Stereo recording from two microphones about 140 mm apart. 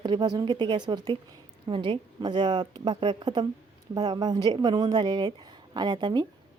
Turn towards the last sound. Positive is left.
turn(degrees=-30)  # may be behind; listen again after turning